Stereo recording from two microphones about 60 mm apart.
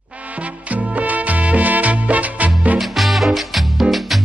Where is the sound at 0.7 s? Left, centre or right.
Right.